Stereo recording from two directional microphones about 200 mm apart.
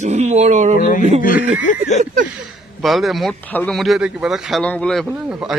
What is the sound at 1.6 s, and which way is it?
Speech, 40° left (ahead or behind).